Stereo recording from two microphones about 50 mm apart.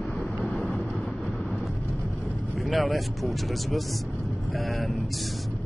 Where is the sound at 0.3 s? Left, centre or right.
Left.